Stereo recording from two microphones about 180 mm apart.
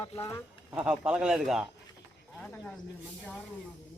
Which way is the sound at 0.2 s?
15° left (ahead or behind).